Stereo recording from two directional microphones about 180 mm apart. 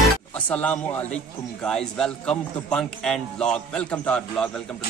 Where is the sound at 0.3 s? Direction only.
10° left (ahead or behind).